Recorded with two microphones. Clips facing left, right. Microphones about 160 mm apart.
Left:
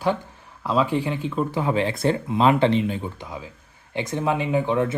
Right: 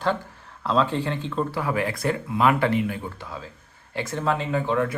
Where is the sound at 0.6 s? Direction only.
10° left (ahead or behind).